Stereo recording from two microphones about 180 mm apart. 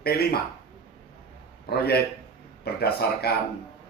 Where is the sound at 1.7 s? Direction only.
60° left (ahead or behind).